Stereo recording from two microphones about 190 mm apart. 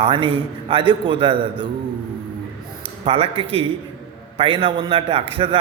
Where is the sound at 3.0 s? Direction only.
30° right (ahead or behind).